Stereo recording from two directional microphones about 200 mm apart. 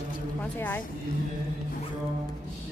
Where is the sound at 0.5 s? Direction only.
10° left (ahead or behind).